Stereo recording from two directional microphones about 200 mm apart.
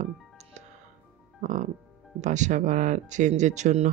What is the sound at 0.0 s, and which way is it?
Music, 35° right (ahead or behind).